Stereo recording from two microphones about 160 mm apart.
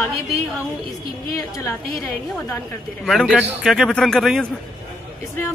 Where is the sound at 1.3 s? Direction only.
20° left (ahead or behind).